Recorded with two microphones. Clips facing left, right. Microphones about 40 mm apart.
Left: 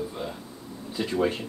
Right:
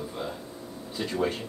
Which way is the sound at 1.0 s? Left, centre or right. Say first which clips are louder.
Left 3 dB; centre.